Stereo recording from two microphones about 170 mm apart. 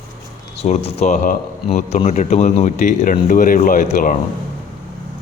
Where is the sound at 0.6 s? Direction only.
40° left (ahead or behind).